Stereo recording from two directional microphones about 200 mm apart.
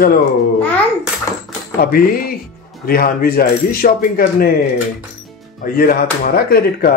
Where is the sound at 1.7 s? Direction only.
45° left (ahead or behind).